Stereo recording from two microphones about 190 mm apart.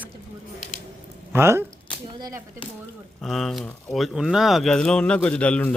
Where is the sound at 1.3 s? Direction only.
10° right (ahead or behind).